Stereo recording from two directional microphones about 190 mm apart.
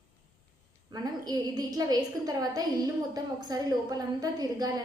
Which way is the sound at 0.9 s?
20° right (ahead or behind).